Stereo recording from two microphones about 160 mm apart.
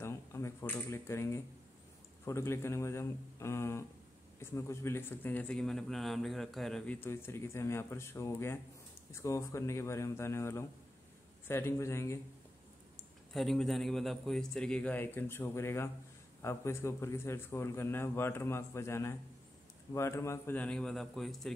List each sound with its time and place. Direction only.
0.0 s a sound: 15° left (ahead or behind)
2.2 s a man's voice: 15° left (ahead or behind)
7.0 s a man's voice: 15° left (ahead or behind)
12.9 s a man's voice: centre (ahead or behind)